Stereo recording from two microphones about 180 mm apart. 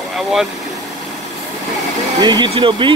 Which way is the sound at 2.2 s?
25° right (ahead or behind).